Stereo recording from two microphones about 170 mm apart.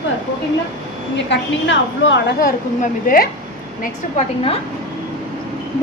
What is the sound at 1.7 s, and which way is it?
Speech, 90° left.